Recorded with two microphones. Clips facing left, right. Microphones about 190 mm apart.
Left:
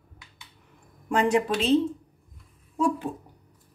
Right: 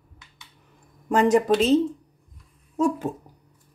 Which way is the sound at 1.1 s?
40° right (ahead or behind).